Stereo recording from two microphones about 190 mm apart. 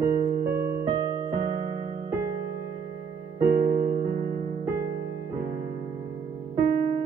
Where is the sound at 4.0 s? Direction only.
45° right (ahead or behind).